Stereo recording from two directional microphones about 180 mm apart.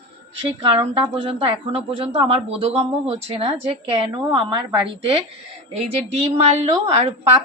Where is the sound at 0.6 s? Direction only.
30° right (ahead or behind).